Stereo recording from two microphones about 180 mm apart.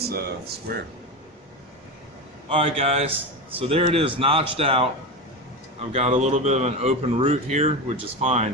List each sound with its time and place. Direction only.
0.1 s speech: 60° right (ahead or behind)
2.5 s speech: 30° right (ahead or behind)
5.9 s speech: 35° right (ahead or behind)